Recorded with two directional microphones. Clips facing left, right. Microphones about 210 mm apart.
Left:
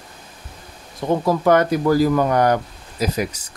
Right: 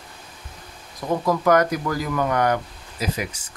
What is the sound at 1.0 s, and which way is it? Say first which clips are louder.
Speech: left 3 dB; 30° left (ahead or behind).